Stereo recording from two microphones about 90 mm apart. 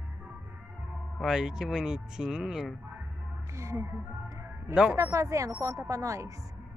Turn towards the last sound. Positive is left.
turn(degrees=-35)  # may be behind; listen again after turning